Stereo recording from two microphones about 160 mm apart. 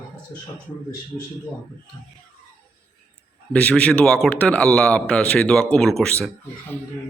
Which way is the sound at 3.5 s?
5° left (ahead or behind).